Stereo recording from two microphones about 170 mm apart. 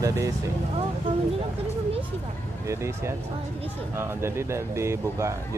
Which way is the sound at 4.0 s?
15° right (ahead or behind).